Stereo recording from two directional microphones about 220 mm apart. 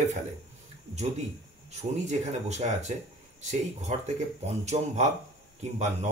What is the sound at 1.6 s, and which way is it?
Speech, 30° right (ahead or behind).